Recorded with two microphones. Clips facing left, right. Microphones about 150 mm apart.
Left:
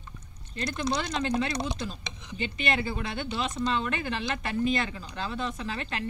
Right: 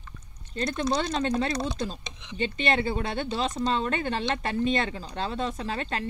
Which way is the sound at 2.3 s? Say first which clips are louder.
Right 4 dB; 30° right (ahead or behind).